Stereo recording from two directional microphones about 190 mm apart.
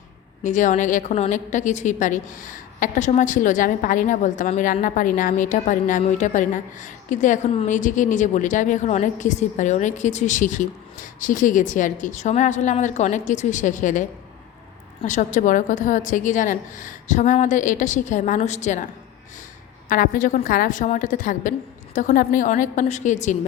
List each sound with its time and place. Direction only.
0.4 s a woman's voice: 40° left (ahead or behind)
15.0 s a woman's voice: 40° left (ahead or behind)
19.9 s a woman's voice: 45° left (ahead or behind)